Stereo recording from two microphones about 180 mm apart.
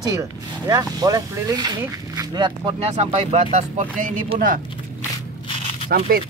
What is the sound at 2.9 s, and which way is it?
Speech, 35° right (ahead or behind).